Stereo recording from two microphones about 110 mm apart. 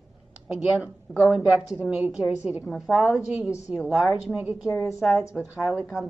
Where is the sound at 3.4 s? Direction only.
25° left (ahead or behind).